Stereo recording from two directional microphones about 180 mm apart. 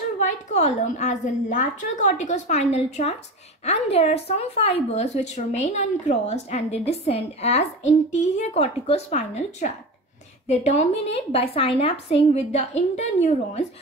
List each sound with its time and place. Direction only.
0.2 s a woman's voice: 40° left (ahead or behind)